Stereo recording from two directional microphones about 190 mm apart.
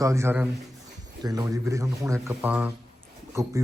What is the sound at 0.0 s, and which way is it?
Speech, 15° right (ahead or behind).